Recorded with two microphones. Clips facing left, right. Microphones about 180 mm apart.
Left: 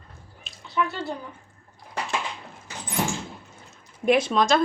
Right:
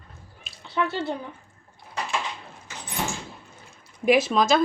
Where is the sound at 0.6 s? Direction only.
30° right (ahead or behind).